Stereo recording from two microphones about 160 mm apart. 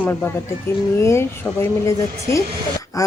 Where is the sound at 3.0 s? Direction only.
20° left (ahead or behind).